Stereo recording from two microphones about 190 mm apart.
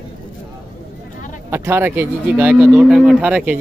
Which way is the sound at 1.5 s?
10° right (ahead or behind).